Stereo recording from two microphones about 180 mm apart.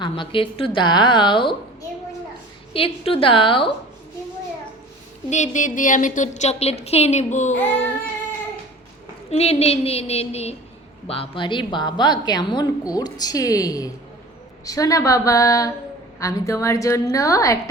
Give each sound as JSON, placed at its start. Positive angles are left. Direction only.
{"t": 0.0, "sound": "a woman's voice", "side_deg": 30}
{"t": 2.7, "sound": "speech", "side_deg": 30}
{"t": 5.3, "sound": "speech", "side_deg": 40}
{"t": 7.5, "sound": "a woman's voice", "side_deg": 10}
{"t": 9.3, "sound": "a woman's voice", "side_deg": 35}